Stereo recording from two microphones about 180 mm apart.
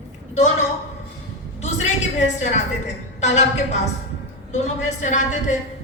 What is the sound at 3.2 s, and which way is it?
Speech, 40° left (ahead or behind).